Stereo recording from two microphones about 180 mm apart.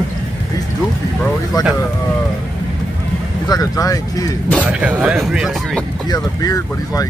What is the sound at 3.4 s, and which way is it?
Speech, 20° left (ahead or behind).